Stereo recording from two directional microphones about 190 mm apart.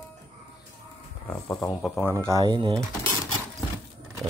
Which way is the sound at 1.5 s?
5° left (ahead or behind).